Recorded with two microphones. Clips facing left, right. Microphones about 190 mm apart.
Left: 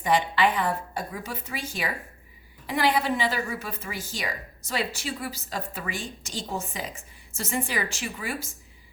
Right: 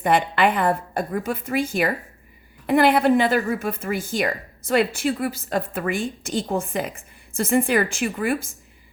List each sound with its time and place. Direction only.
0.0 s a woman's voice: 55° right (ahead or behind)